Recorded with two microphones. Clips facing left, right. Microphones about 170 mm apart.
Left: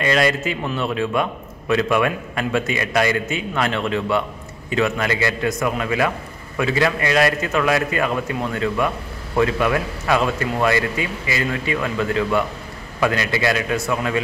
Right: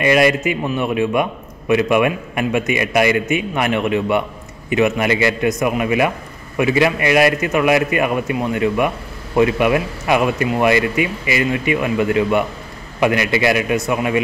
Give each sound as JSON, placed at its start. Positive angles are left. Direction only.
{"t": 0.0, "sound": "a man's voice", "side_deg": -15}